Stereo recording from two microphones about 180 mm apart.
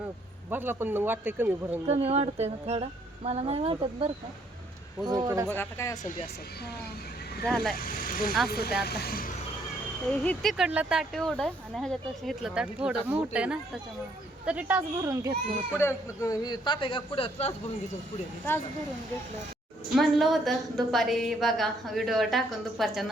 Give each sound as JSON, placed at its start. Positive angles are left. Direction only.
{"t": 0.5, "sound": "speech", "side_deg": -10}
{"t": 1.9, "sound": "music", "side_deg": -35}
{"t": 5.0, "sound": "speech", "side_deg": -20}
{"t": 5.5, "sound": "speech", "side_deg": 15}
{"t": 7.4, "sound": "a woman's voice", "side_deg": 0}
{"t": 7.8, "sound": "speech", "side_deg": 50}
{"t": 10.1, "sound": "a woman's voice", "side_deg": 5}
{"t": 15.8, "sound": "a man's voice", "side_deg": 15}
{"t": 20.0, "sound": "a woman's voice", "side_deg": 0}